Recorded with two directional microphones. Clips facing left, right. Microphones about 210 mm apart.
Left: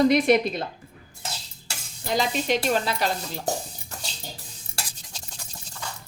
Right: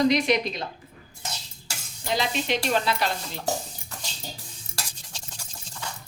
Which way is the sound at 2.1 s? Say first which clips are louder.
Left 3 dB; 45° left (ahead or behind).